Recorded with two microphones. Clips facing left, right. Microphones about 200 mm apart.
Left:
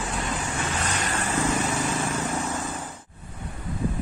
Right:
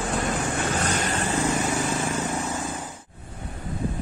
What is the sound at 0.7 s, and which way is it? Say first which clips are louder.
Vehicle: right 4 dB; 45° right (ahead or behind).